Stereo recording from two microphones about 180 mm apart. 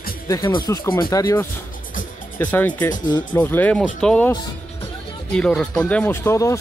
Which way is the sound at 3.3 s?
10° left (ahead or behind).